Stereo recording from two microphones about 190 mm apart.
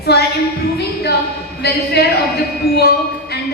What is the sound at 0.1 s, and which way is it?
Speech, 60° left (ahead or behind).